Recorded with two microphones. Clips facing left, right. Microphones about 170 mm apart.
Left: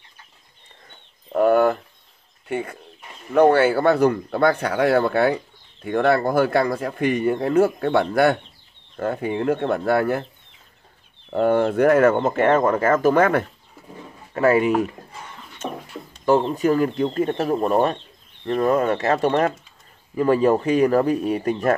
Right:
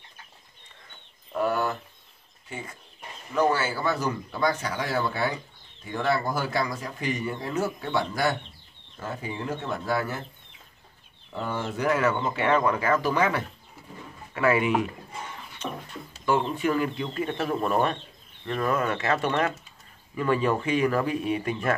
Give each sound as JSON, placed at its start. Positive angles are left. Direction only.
{"t": 1.3, "sound": "a sound", "side_deg": 55}
{"t": 2.4, "sound": "speech", "side_deg": 60}
{"t": 11.2, "sound": "speech", "side_deg": 60}
{"t": 14.3, "sound": "speech", "side_deg": 40}